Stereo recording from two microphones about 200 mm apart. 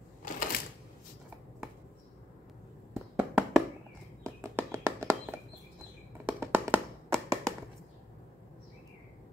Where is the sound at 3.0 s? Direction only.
5° right (ahead or behind).